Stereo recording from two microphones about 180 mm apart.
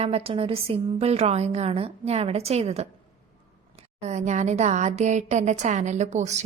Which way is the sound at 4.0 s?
40° right (ahead or behind).